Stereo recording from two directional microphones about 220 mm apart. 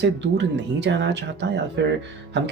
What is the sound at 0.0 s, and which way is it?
Speech, 55° right (ahead or behind).